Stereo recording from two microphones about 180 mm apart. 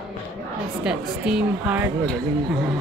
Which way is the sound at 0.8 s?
5° right (ahead or behind).